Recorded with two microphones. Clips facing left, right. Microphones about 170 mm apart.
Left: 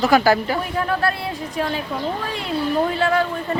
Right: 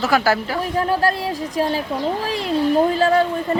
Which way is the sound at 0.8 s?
35° right (ahead or behind).